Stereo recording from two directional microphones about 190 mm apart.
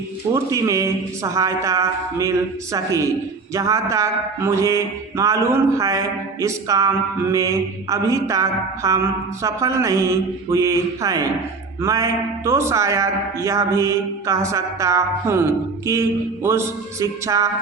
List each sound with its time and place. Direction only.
0.5 s mantra: 15° right (ahead or behind)